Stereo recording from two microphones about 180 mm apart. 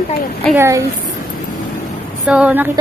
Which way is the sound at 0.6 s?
15° right (ahead or behind).